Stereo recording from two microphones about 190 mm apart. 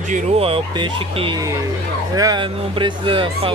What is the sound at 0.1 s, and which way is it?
Speech, 30° right (ahead or behind).